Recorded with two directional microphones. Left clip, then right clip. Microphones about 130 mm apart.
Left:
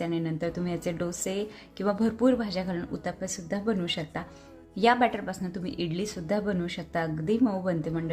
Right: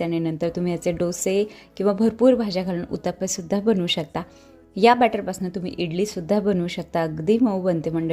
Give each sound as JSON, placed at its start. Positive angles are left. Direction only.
{"t": 0.0, "sound": "speech", "side_deg": -50}